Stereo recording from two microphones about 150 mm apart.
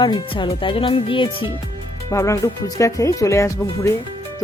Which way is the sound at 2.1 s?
20° left (ahead or behind).